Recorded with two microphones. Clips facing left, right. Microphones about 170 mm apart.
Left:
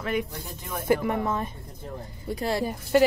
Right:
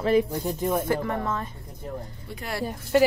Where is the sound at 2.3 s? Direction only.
30° left (ahead or behind).